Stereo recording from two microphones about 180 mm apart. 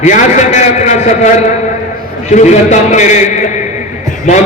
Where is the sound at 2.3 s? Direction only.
40° left (ahead or behind).